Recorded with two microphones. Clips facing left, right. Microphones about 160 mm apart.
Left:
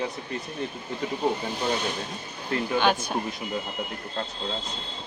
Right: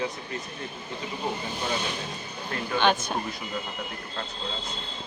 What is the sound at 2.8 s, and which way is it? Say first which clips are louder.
Speech: right 2 dB; 10° left (ahead or behind).